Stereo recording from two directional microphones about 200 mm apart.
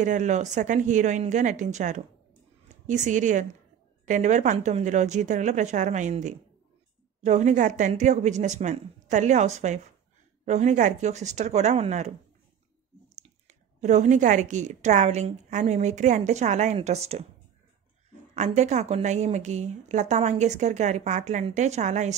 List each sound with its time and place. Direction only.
0.0 s a woman's voice: 35° right (ahead or behind)
13.5 s a woman's voice: 35° right (ahead or behind)
18.3 s a woman's voice: 35° right (ahead or behind)